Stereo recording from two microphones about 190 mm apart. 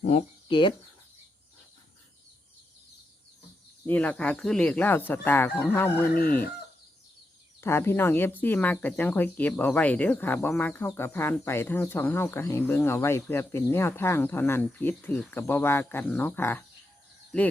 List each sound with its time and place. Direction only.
0.0 s speech: 35° left (ahead or behind)
0.4 s speech: 25° left (ahead or behind)
3.8 s speech: 10° left (ahead or behind)
7.6 s speech: 15° left (ahead or behind)